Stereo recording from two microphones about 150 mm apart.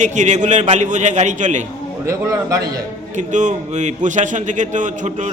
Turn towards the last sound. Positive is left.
turn(degrees=-50)  # may be behind; listen again after turning